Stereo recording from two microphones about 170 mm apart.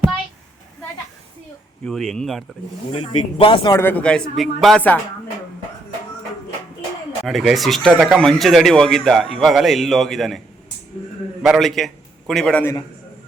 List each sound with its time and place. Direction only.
1.8 s a man's voice: centre (ahead or behind)
3.0 s speech: 30° left (ahead or behind)
3.7 s a man's voice: 15° left (ahead or behind)
7.3 s a man's voice: centre (ahead or behind)
11.4 s a man's voice: centre (ahead or behind)